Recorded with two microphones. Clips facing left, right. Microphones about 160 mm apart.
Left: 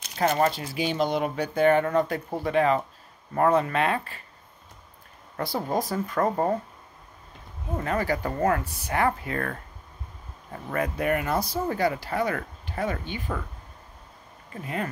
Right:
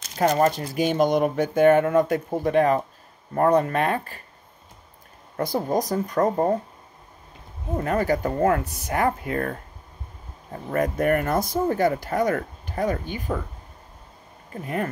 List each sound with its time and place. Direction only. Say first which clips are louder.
0.1 s speech: right 3 dB; 40° right (ahead or behind)
5.4 s speech: right 4 dB; 40° right (ahead or behind)
7.8 s speech: right 4 dB; 45° right (ahead or behind)
14.5 s speech: right 4 dB; 45° right (ahead or behind)